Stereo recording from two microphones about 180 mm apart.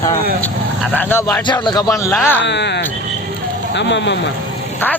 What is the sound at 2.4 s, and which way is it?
Speech, 75° left (ahead or behind).